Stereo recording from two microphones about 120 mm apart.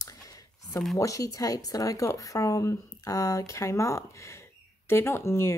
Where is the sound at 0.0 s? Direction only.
30° left (ahead or behind).